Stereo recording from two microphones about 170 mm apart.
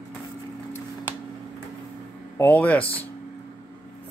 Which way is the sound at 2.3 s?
10° left (ahead or behind).